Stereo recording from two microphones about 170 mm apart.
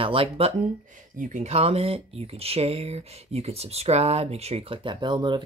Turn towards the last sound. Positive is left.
turn(degrees=-25)  # may be behind; listen again after turning